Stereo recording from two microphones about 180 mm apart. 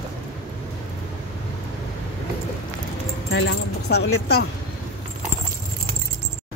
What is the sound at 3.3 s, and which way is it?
Speech, 70° left (ahead or behind).